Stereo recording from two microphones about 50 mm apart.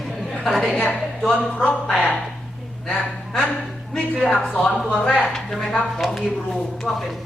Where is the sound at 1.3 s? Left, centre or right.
Left.